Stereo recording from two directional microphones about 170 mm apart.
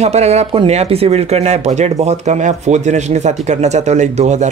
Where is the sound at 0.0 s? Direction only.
40° right (ahead or behind).